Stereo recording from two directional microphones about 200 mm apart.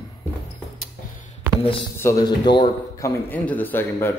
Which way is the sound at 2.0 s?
15° left (ahead or behind).